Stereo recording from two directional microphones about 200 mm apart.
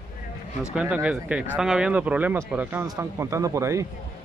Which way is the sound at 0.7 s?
5° right (ahead or behind).